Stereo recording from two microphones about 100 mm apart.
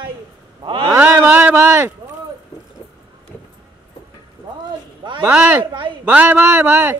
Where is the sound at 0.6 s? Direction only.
55° right (ahead or behind).